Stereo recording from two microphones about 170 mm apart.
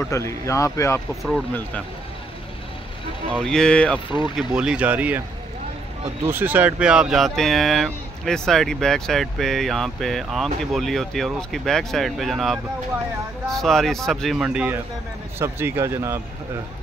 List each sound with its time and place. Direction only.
0.0 s speech: 15° left (ahead or behind)
1.2 s speech: 5° left (ahead or behind)
3.3 s speech: 5° left (ahead or behind)
4.6 s speech: 5° right (ahead or behind)
6.2 s speech: 10° right (ahead or behind)